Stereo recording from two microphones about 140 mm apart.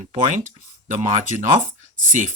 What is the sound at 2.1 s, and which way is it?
Speech, 65° right (ahead or behind).